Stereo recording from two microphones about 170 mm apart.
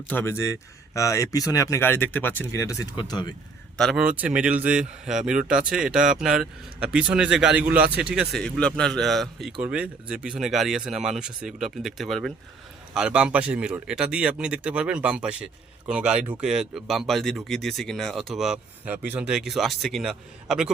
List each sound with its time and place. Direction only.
0.1 s speech: 15° left (ahead or behind)
3.8 s speech: centre (ahead or behind)